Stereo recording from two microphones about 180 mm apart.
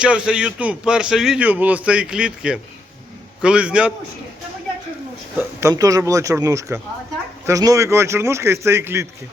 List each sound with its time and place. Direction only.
0.0 s a man's voice: 5° right (ahead or behind)
5.4 s a man's voice: 15° right (ahead or behind)